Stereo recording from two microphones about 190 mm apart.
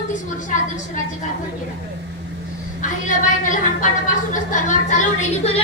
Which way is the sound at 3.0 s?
40° left (ahead or behind).